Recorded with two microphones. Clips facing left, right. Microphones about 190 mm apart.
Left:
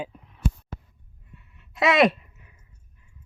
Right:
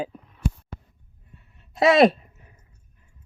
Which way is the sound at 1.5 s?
35° right (ahead or behind).